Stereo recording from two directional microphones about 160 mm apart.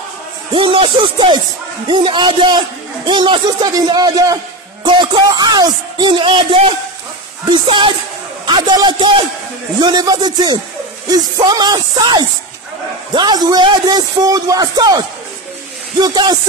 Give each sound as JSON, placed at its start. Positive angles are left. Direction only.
{"t": 0.5, "sound": "a man's voice", "side_deg": -35}